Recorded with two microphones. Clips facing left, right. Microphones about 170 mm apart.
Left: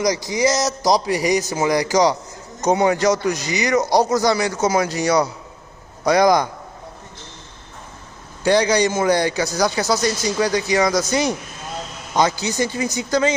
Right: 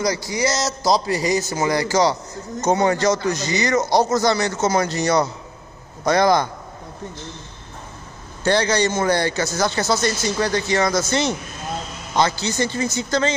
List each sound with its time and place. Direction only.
0.0 s speech: 15° left (ahead or behind)
8.5 s speech: 15° left (ahead or behind)